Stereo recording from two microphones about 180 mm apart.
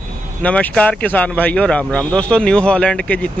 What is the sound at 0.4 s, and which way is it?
Speech, 5° left (ahead or behind).